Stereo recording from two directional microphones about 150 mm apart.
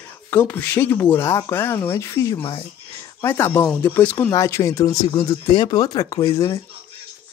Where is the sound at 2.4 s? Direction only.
35° left (ahead or behind).